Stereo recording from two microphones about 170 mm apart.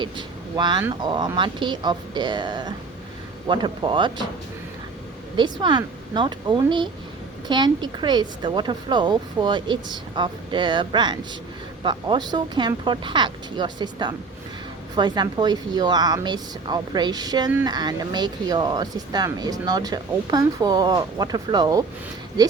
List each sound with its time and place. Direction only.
0.0 s speech: 25° right (ahead or behind)
5.4 s speech: 25° right (ahead or behind)